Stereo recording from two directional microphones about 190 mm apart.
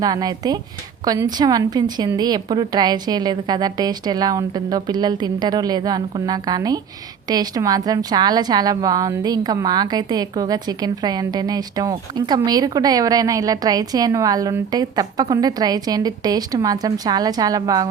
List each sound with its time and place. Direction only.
0.0 s a woman's voice: 20° right (ahead or behind)